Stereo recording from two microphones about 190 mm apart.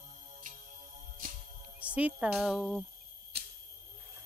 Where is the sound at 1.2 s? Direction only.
45° right (ahead or behind).